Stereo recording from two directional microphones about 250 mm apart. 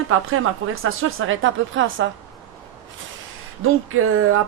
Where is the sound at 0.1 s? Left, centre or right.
Right.